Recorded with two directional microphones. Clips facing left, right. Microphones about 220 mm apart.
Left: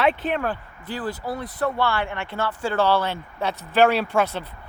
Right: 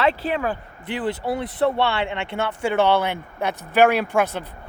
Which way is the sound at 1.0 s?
30° right (ahead or behind).